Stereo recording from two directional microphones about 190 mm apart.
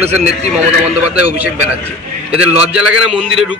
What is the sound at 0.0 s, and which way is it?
Speech, 35° right (ahead or behind).